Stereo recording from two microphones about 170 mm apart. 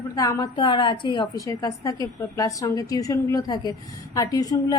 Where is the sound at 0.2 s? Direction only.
20° left (ahead or behind).